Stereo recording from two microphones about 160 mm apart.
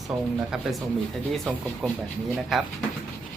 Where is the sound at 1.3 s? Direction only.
Centre (ahead or behind).